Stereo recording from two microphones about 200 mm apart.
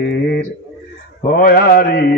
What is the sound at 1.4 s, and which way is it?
Music, 45° left (ahead or behind).